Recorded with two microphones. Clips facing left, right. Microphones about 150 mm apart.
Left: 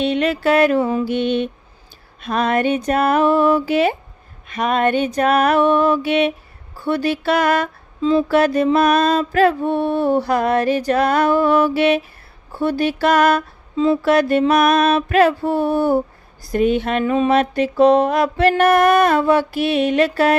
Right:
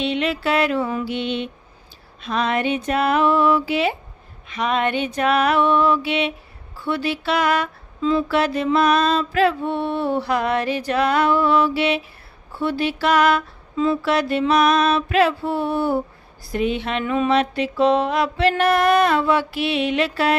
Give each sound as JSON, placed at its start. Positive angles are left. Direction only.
{"t": 0.0, "sound": "mantra", "side_deg": 45}
{"t": 0.8, "sound": "mantra", "side_deg": 25}
{"t": 1.0, "sound": "mantra", "side_deg": 45}
{"t": 13.7, "sound": "mantra", "side_deg": 30}
{"t": 14.0, "sound": "mantra", "side_deg": 50}